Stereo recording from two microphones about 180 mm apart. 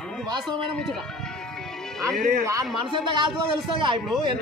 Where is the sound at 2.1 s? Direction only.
50° right (ahead or behind).